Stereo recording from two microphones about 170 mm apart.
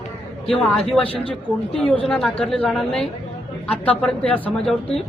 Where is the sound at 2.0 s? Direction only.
5° left (ahead or behind).